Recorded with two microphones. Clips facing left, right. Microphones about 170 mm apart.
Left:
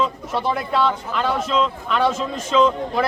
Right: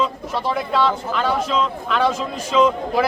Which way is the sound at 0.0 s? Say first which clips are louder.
Even; centre (ahead or behind).